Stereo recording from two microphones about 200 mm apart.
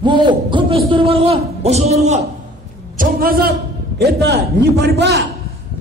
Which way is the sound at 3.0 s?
45° right (ahead or behind).